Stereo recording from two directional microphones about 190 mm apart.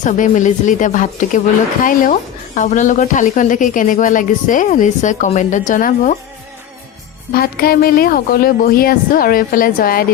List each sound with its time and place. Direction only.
0.0 s a woman's voice: 40° left (ahead or behind)
7.3 s speech: 50° left (ahead or behind)